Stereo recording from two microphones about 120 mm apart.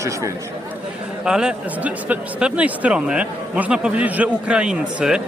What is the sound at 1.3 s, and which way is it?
Speech, 5° right (ahead or behind).